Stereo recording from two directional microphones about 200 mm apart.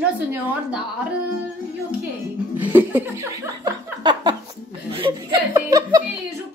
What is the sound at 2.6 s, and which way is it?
Laughter, 10° right (ahead or behind).